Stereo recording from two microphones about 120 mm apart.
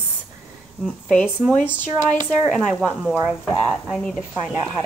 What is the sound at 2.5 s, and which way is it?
Speech, 5° left (ahead or behind).